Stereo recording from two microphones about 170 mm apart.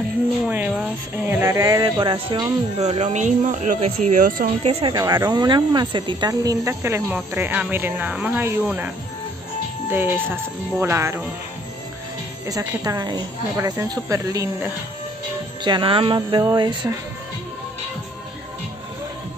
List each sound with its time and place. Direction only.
0.5 s speech: 10° right (ahead or behind)
2.8 s speech: 40° right (ahead or behind)
4.6 s speech: 25° right (ahead or behind)
12.4 s speech: 20° right (ahead or behind)